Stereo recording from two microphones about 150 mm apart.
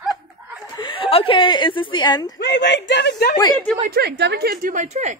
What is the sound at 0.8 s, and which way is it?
Speech, 35° left (ahead or behind).